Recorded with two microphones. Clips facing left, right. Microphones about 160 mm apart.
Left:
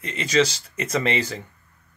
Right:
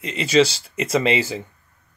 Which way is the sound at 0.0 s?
25° right (ahead or behind).